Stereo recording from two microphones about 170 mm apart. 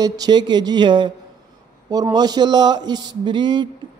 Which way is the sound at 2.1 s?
25° right (ahead or behind).